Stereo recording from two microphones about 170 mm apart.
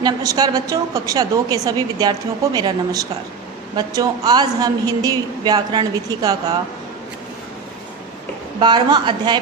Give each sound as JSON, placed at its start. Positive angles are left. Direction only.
{"t": 0.0, "sound": "a woman's voice", "side_deg": -20}
{"t": 8.5, "sound": "a woman's voice", "side_deg": -25}